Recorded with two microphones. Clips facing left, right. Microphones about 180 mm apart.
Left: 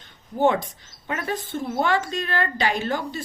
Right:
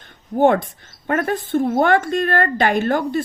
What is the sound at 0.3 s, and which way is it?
A woman's voice, 55° right (ahead or behind).